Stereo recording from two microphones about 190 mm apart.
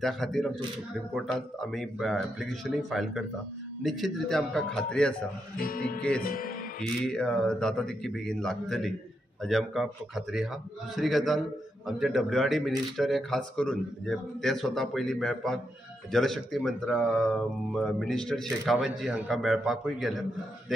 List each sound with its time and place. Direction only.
0.0 s speech: centre (ahead or behind)
5.6 s music: 50° left (ahead or behind)
7.1 s speech: 5° left (ahead or behind)